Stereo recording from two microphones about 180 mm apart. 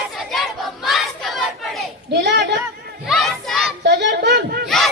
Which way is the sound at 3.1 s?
Centre (ahead or behind).